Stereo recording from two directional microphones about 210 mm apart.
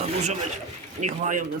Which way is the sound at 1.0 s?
40° right (ahead or behind).